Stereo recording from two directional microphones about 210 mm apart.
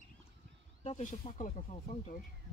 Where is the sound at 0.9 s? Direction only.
30° left (ahead or behind).